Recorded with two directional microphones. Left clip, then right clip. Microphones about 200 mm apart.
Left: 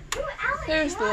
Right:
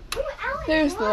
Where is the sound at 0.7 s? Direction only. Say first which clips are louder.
Right 5 dB; 30° right (ahead or behind).